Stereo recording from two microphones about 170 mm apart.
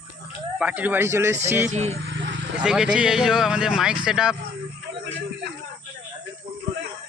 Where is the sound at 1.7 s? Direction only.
40° right (ahead or behind).